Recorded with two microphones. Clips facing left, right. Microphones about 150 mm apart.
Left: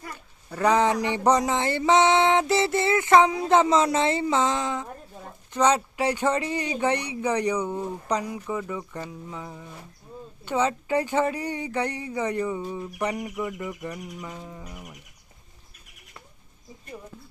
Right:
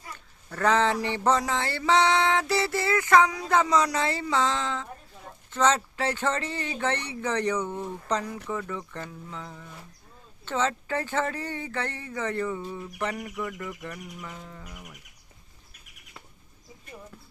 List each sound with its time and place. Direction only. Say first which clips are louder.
0.5 s speech: left 2 dB; 15° left (ahead or behind)
1.0 s a sound: left 3 dB; 15° left (ahead or behind)
5.5 s speech: left 2 dB; 15° left (ahead or behind)